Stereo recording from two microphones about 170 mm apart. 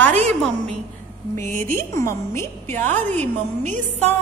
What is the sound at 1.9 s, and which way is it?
Speech, 15° left (ahead or behind).